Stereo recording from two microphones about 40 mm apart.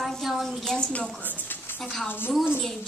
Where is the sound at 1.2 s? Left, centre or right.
Left.